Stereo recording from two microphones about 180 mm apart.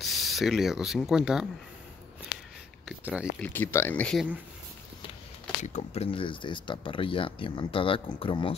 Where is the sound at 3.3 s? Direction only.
10° left (ahead or behind).